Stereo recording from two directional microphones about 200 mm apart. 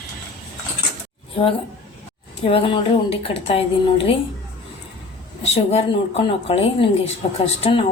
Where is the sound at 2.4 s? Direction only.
30° left (ahead or behind).